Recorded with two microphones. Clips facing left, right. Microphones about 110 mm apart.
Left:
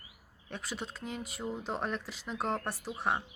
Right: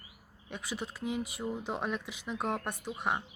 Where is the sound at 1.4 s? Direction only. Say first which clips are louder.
Right 1 dB; 25° left (ahead or behind).